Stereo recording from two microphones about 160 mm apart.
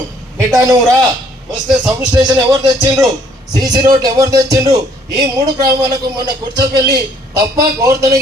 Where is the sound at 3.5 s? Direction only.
25° right (ahead or behind).